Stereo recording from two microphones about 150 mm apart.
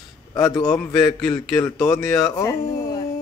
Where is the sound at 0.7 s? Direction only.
5° left (ahead or behind).